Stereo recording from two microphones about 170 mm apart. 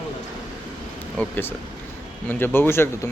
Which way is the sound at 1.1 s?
10° left (ahead or behind).